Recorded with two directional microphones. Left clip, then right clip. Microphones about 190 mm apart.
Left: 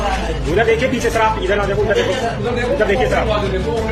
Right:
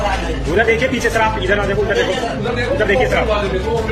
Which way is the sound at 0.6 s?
Centre (ahead or behind).